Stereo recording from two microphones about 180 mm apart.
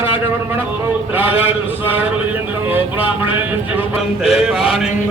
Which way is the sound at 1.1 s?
10° right (ahead or behind).